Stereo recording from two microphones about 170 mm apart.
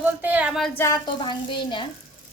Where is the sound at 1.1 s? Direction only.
25° left (ahead or behind).